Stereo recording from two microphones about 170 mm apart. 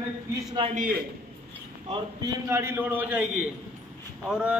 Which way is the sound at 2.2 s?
15° right (ahead or behind).